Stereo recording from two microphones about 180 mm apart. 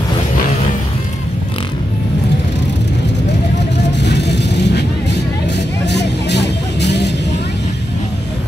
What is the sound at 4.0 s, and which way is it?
Vehicle, 70° left (ahead or behind).